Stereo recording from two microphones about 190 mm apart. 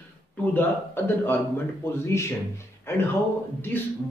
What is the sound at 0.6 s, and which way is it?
Speech, 10° left (ahead or behind).